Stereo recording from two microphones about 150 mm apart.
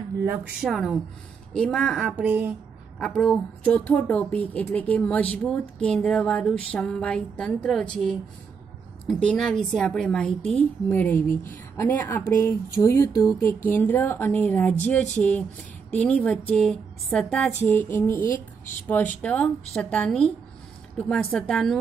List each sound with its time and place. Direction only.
0.2 s a woman's voice: 10° right (ahead or behind)
3.2 s a woman's voice: 5° left (ahead or behind)
18.2 s speech: 65° left (ahead or behind)
18.9 s a woman's voice: 10° left (ahead or behind)